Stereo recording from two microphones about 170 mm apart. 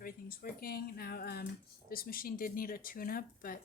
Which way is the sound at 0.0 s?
60° left (ahead or behind).